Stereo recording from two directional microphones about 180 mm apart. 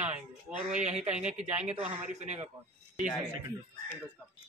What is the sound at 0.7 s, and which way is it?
Speech, 40° right (ahead or behind).